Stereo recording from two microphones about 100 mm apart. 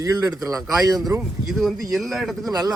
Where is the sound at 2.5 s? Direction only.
40° right (ahead or behind).